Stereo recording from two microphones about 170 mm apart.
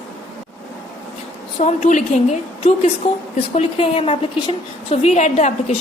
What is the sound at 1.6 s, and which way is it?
A woman's voice, 45° left (ahead or behind).